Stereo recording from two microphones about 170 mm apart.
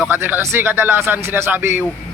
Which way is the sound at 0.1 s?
10° right (ahead or behind).